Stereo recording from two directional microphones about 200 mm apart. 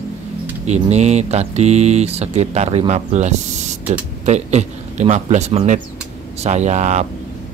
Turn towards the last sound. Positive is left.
turn(degrees=-35)  # may be behind; listen again after turning